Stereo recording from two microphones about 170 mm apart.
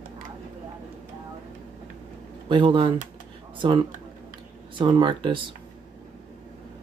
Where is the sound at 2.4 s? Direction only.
30° right (ahead or behind).